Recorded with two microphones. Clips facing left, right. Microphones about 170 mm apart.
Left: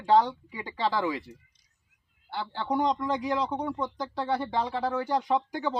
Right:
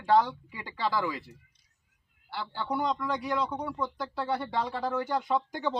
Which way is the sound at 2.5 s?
20° left (ahead or behind).